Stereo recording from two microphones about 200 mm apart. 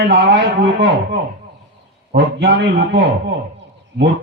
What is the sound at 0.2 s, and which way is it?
Speech, 60° right (ahead or behind).